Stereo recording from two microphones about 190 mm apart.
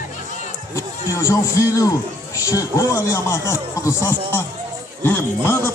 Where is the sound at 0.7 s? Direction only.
15° left (ahead or behind).